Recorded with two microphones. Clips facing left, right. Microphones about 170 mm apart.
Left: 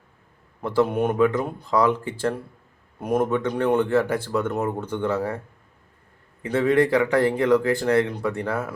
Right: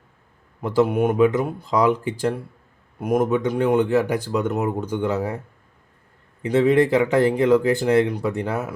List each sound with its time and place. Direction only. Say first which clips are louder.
0.6 s speech: right 2 dB; 15° right (ahead or behind)
6.4 s speech: right 3 dB; 20° right (ahead or behind)